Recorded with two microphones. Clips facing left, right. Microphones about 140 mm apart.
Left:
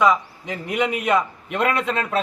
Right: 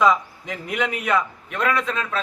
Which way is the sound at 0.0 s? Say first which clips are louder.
Even; 5° left (ahead or behind).